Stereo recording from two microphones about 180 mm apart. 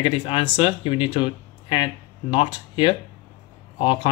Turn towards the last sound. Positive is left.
turn(degrees=30)  # may be behind; listen again after turning